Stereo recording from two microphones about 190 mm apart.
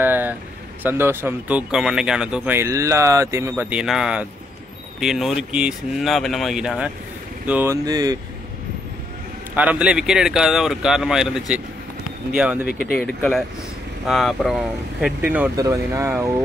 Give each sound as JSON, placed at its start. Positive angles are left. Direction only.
{"t": 0.0, "sound": "vehicle", "side_deg": -10}
{"t": 0.8, "sound": "speech", "side_deg": -10}
{"t": 9.6, "sound": "speech", "side_deg": -5}
{"t": 12.9, "sound": "speech", "side_deg": 5}